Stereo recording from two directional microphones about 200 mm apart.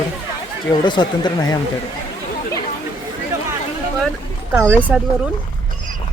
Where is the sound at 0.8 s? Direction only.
20° left (ahead or behind).